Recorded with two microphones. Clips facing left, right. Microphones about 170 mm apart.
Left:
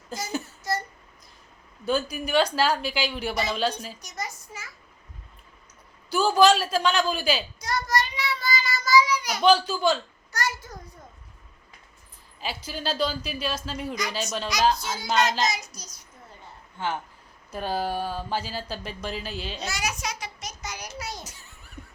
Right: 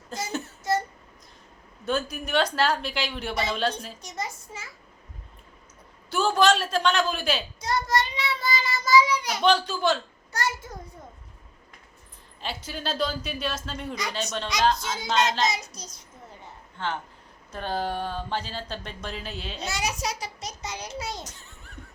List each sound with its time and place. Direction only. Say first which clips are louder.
0.3 s a sound: left 3 dB; centre (ahead or behind)
1.9 s a woman's voice: left 2 dB; centre (ahead or behind)
4.0 s a sound: right 2 dB; 25° right (ahead or behind)
6.1 s a woman's voice: left 2 dB; centre (ahead or behind)
7.6 s child singing: right 1 dB; 25° right (ahead or behind)
9.4 s a woman's voice: left 3 dB; centre (ahead or behind)
10.3 s a sound: right 1 dB; 25° right (ahead or behind)
12.4 s a woman's voice: left 1 dB; 5° left (ahead or behind)
14.9 s a child's voice: even; 25° right (ahead or behind)
16.7 s a woman's voice: left 1 dB; 10° left (ahead or behind)
19.6 s a child's voice: right 3 dB; 30° right (ahead or behind)
21.2 s a sound: right 1 dB; 5° left (ahead or behind)